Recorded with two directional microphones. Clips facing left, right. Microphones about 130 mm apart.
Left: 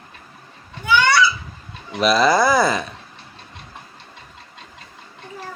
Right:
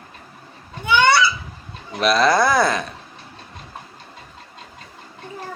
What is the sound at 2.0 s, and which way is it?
Speech, centre (ahead or behind).